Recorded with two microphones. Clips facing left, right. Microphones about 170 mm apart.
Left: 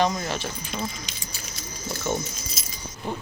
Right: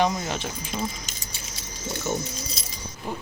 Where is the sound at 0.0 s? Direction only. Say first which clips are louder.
Even; 15° right (ahead or behind).